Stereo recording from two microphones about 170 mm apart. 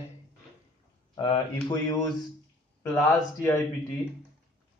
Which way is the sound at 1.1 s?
25° left (ahead or behind).